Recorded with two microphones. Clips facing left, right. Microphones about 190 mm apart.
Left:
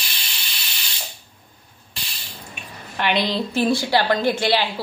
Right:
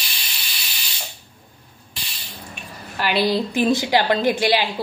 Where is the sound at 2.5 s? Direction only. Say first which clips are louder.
Right 1 dB; 5° right (ahead or behind).